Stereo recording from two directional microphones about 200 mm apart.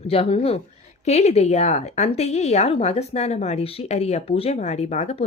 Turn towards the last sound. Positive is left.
turn(degrees=35)  # may be behind; listen again after turning